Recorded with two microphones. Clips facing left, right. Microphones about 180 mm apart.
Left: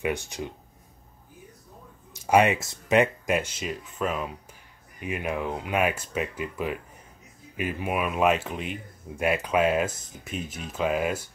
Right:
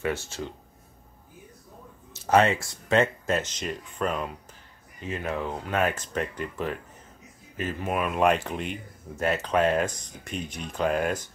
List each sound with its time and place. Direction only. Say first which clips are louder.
0.0 s speech: left 1 dB; 15° left (ahead or behind)
2.1 s speech: even; 15° left (ahead or behind)
5.0 s speech: left 1 dB; 15° left (ahead or behind)